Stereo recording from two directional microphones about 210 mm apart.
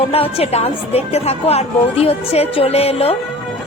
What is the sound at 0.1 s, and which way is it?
A woman's voice, 30° left (ahead or behind).